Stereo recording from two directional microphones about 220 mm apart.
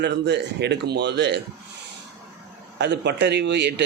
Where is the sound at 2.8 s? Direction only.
50° right (ahead or behind).